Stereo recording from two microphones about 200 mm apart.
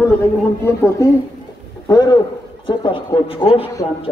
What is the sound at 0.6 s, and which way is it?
A woman's voice, 15° left (ahead or behind).